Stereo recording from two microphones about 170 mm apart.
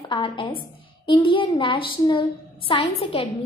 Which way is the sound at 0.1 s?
30° left (ahead or behind).